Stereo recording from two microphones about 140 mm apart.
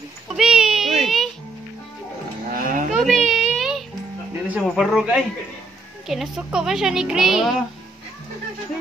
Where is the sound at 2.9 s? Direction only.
Centre (ahead or behind).